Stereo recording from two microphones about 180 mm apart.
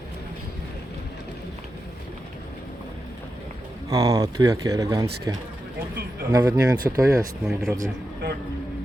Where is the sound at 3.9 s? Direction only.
20° right (ahead or behind).